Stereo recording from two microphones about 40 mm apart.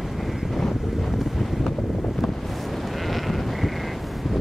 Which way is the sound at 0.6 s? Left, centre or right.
Centre.